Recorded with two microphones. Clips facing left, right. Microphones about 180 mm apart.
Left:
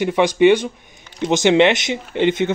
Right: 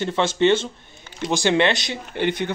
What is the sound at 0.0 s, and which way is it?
Speech, 15° left (ahead or behind).